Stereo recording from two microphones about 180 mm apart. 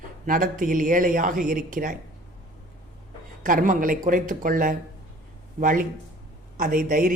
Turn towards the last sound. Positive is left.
turn(degrees=-50)  # may be behind; listen again after turning